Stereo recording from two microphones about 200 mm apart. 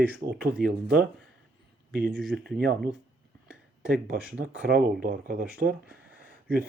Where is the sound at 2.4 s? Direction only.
50° right (ahead or behind).